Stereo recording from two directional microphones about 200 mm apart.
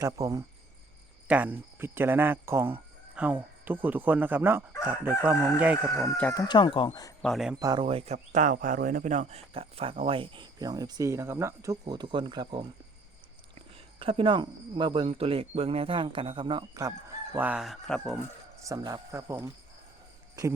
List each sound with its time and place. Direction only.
0.0 s speech: 15° right (ahead or behind)
6.1 s speech: 10° left (ahead or behind)
7.2 s speech: centre (ahead or behind)
7.6 s speech: 20° right (ahead or behind)
14.0 s speech: 25° right (ahead or behind)
17.3 s speech: 5° right (ahead or behind)
18.6 s speech: 15° right (ahead or behind)